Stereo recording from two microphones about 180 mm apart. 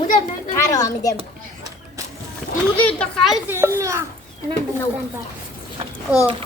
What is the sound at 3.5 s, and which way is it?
Speech, 15° right (ahead or behind).